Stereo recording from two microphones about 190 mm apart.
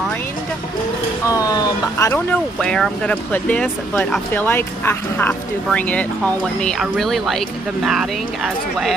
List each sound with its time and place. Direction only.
1.3 s speech: 20° left (ahead or behind)
2.6 s speech: 5° left (ahead or behind)